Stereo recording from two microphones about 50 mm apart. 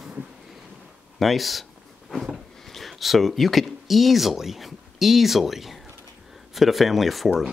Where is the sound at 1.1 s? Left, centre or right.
Centre.